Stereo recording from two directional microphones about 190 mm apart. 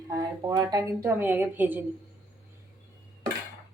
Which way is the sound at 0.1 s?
20° right (ahead or behind).